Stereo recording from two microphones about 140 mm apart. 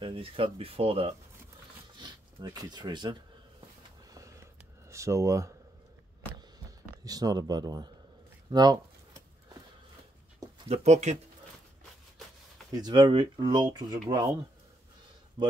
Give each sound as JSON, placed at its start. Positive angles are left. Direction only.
{"t": 0.0, "sound": "speech", "side_deg": -40}
{"t": 2.0, "sound": "speech", "side_deg": -30}
{"t": 4.1, "sound": "a sound", "side_deg": -20}
{"t": 7.1, "sound": "speech", "side_deg": -25}
{"t": 10.7, "sound": "speech", "side_deg": -50}
{"t": 12.7, "sound": "speech", "side_deg": -30}